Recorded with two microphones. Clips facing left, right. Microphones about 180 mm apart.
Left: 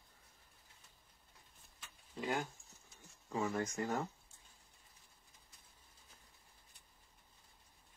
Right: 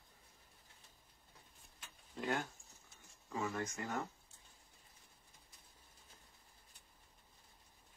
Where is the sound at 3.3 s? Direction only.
30° left (ahead or behind).